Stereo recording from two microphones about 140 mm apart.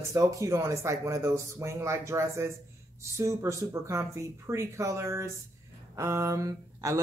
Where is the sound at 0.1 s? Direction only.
20° right (ahead or behind).